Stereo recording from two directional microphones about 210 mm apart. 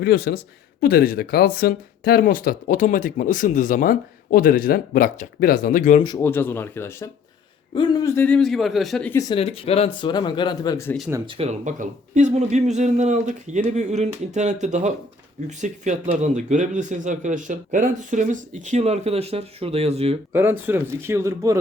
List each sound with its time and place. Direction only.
0.0 s speech: 50° left (ahead or behind)
6.0 s speech: 20° left (ahead or behind)
6.2 s speech: 10° left (ahead or behind)
9.3 s speech: 25° left (ahead or behind)
11.1 s speech: 25° right (ahead or behind)
20.3 s speech: 10° right (ahead or behind)